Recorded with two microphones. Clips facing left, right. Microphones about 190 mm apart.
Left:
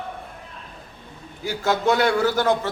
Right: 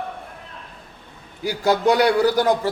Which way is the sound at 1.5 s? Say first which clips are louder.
Right 3 dB; 15° right (ahead or behind).